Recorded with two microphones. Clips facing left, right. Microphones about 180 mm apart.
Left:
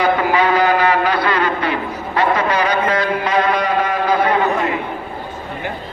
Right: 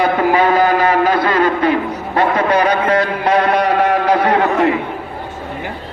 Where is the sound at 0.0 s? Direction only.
45° right (ahead or behind); by 4.7 s 75° right (ahead or behind).